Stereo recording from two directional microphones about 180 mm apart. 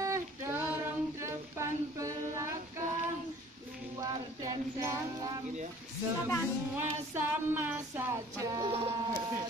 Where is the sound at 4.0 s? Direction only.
20° right (ahead or behind).